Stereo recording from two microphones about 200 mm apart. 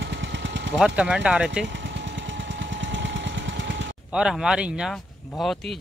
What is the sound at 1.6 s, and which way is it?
Jackhammer, 65° right (ahead or behind).